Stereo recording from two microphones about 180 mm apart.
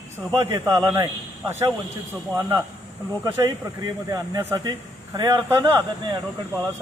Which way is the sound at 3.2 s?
20° right (ahead or behind).